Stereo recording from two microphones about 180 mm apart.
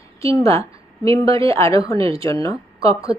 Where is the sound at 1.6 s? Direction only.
15° left (ahead or behind).